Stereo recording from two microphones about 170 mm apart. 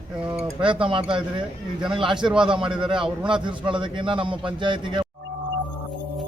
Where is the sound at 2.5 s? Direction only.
30° right (ahead or behind).